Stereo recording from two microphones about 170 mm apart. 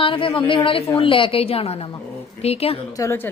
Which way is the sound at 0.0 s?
30° left (ahead or behind).